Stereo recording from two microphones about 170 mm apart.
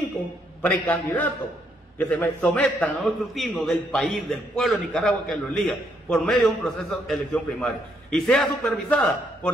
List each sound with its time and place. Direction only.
0.6 s a man's voice: 10° left (ahead or behind)